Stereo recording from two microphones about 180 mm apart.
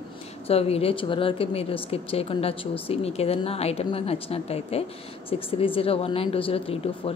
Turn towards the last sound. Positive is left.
turn(degrees=30)  # may be behind; listen again after turning